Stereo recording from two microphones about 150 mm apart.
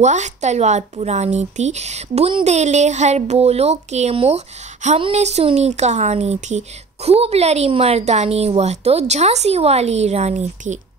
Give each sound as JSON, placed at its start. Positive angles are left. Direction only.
{"t": 0.0, "sound": "a woman's voice", "side_deg": -50}